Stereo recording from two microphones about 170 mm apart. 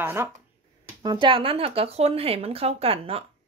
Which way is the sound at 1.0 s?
30° right (ahead or behind).